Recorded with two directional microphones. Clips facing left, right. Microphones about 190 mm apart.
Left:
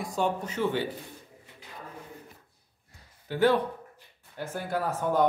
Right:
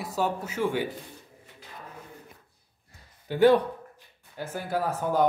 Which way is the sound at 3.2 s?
15° right (ahead or behind).